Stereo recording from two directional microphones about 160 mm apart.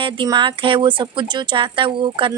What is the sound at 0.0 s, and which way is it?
A woman's voice, 30° right (ahead or behind).